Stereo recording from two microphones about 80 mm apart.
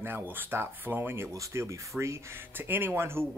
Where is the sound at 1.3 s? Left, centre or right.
Right.